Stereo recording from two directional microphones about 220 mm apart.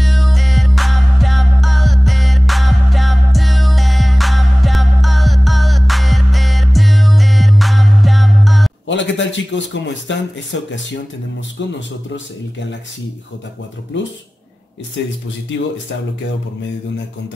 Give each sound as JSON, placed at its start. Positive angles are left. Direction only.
{"t": 0.0, "sound": "music", "side_deg": 0}
{"t": 8.8, "sound": "speech", "side_deg": 55}
{"t": 13.9, "sound": "speech", "side_deg": 55}